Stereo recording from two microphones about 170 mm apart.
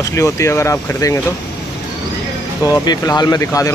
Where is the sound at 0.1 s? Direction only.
15° left (ahead or behind).